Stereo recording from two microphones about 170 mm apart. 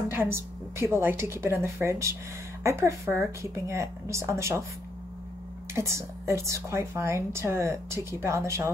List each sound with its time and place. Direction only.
0.1 s a woman's voice: 15° right (ahead or behind)
5.8 s a woman's voice: 15° right (ahead or behind)